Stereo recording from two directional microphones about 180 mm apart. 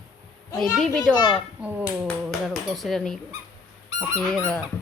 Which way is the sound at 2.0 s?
Centre (ahead or behind).